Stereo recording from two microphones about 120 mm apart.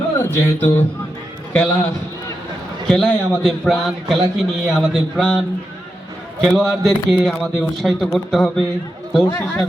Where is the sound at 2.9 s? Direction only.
5° left (ahead or behind).